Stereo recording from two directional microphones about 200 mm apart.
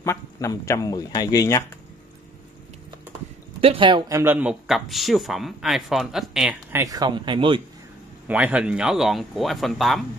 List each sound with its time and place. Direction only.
0.0 s speech: 15° left (ahead or behind)
3.6 s speech: 25° right (ahead or behind)
4.2 s speech: 10° right (ahead or behind)
6.8 s speech: 20° right (ahead or behind)
8.3 s speech: 5° right (ahead or behind)